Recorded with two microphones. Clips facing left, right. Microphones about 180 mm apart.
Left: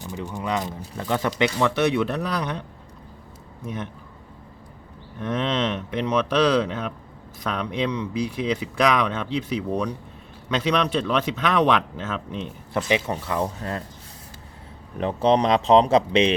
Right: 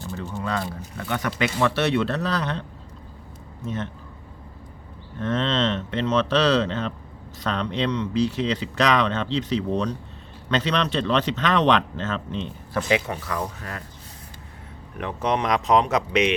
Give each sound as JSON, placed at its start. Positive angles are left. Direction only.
{"t": 0.0, "sound": "speech", "side_deg": 15}
{"t": 1.3, "sound": "speech", "side_deg": 15}
{"t": 5.2, "sound": "speech", "side_deg": 15}
{"t": 12.7, "sound": "speech", "side_deg": 25}
{"t": 14.9, "sound": "speech", "side_deg": 30}